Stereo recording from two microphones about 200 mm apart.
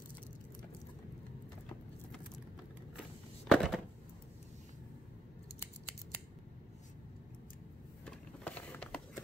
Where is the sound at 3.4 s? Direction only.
Centre (ahead or behind).